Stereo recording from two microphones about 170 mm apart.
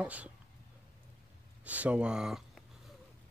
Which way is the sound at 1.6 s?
10° right (ahead or behind).